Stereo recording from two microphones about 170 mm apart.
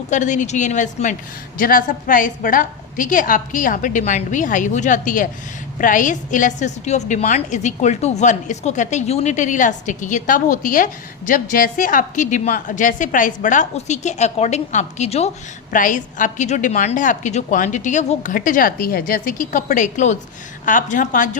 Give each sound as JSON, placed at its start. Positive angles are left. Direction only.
{"t": 0.1, "sound": "a woman's voice", "side_deg": 45}
{"t": 15.7, "sound": "a woman's voice", "side_deg": 50}